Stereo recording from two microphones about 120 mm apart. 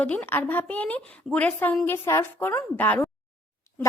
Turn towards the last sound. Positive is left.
turn(degrees=15)  # may be behind; listen again after turning